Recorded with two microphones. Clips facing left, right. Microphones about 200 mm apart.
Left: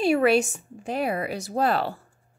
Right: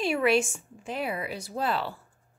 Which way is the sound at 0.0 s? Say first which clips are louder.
Left 4 dB; 40° left (ahead or behind).